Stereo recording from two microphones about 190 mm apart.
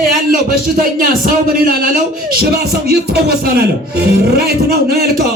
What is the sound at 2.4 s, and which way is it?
Speech, 55° right (ahead or behind).